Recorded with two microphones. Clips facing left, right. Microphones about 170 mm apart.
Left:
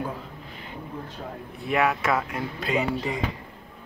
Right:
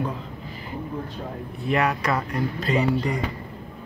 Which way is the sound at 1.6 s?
Centre (ahead or behind).